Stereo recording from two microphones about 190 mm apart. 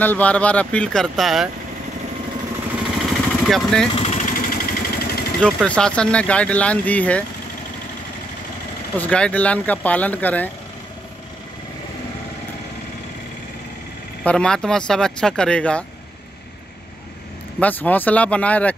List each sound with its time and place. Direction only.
0.0 s speech: 10° left (ahead or behind)
3.1 s vehicle: centre (ahead or behind)
3.9 s vehicle: 35° left (ahead or behind); by 5.2 s 55° left (ahead or behind)
5.4 s speech: 5° left (ahead or behind)
8.9 s speech: 5° left (ahead or behind)
14.2 s speech: 5° left (ahead or behind)
17.6 s speech: 10° left (ahead or behind)